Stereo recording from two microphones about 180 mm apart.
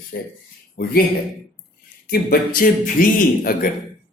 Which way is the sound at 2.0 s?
60° left (ahead or behind).